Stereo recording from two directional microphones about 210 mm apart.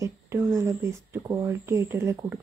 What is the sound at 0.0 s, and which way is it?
Speech, 15° right (ahead or behind).